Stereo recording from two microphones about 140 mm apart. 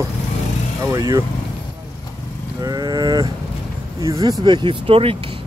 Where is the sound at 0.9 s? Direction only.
25° right (ahead or behind).